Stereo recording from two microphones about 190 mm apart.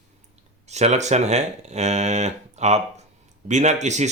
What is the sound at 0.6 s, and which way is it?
Speech, 35° right (ahead or behind).